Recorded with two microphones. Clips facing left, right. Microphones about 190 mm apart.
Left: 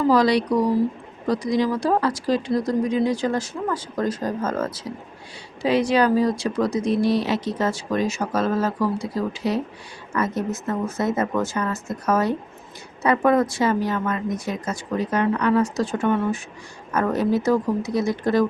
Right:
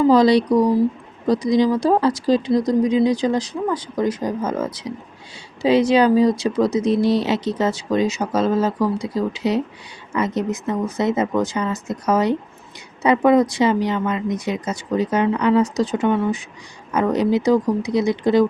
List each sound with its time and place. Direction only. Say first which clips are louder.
0.1 s speech: right 4 dB; 25° right (ahead or behind)
6.9 s speech: right 3 dB; centre (ahead or behind)
7.6 s speech: right 4 dB; 20° right (ahead or behind)